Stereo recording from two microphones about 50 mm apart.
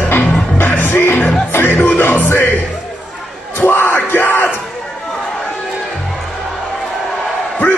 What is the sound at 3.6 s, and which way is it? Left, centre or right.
Yell, left.